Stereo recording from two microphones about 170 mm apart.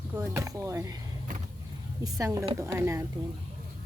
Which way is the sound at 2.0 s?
20° right (ahead or behind).